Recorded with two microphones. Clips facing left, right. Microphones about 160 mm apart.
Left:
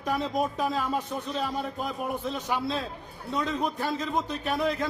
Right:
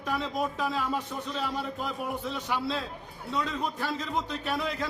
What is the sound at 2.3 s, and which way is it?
A man's voice, 45° left (ahead or behind).